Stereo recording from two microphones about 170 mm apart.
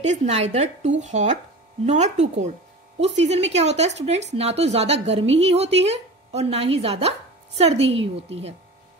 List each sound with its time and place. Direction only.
0.0 s a woman's voice: 40° right (ahead or behind)